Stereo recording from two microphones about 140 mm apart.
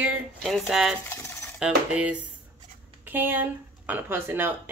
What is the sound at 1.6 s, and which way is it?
Speech, 10° right (ahead or behind).